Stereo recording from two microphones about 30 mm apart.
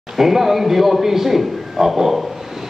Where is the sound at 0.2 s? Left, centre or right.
Centre.